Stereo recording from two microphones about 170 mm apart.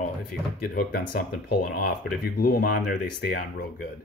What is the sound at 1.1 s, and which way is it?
Speech, 60° left (ahead or behind).